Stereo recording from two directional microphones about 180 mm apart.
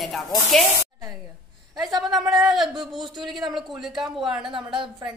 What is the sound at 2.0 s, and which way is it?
Speech, centre (ahead or behind).